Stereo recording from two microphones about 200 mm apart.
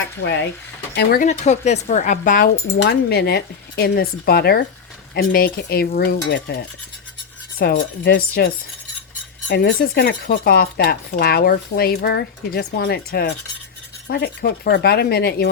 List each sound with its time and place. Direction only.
0.2 s stir: 65° left (ahead or behind)
0.9 s speech: 50° left (ahead or behind)
1.3 s speech: 35° left (ahead or behind)
2.8 s speech: 55° left (ahead or behind)
6.3 s stir: 55° left (ahead or behind)
7.6 s speech: 55° left (ahead or behind)
9.5 s speech: 55° left (ahead or behind)